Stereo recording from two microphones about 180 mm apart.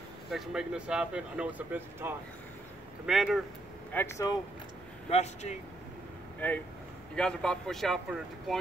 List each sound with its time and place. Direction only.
0.3 s speech: 5° right (ahead or behind)
3.9 s speech: 15° left (ahead or behind)
5.1 s speech: 40° left (ahead or behind)
6.4 s speech: 10° left (ahead or behind)